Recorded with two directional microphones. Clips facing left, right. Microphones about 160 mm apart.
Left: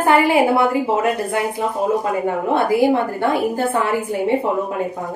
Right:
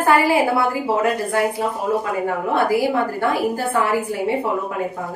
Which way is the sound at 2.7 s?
25° left (ahead or behind).